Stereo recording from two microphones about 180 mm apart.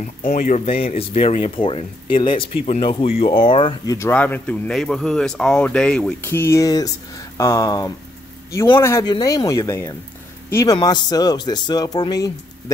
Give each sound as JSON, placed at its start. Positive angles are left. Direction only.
{"t": 0.0, "sound": "speech", "side_deg": 45}